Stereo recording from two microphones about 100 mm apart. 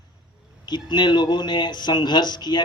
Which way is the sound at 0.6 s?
45° left (ahead or behind).